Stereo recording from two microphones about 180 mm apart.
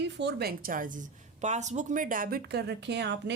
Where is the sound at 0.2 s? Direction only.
65° right (ahead or behind).